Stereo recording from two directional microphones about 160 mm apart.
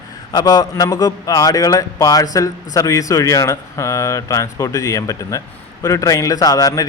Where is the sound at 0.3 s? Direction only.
25° left (ahead or behind).